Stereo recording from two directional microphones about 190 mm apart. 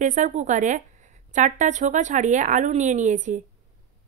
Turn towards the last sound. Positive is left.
turn(degrees=-40)  # may be behind; listen again after turning